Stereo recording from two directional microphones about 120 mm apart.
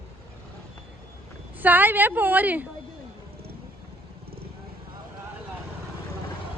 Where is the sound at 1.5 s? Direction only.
15° right (ahead or behind).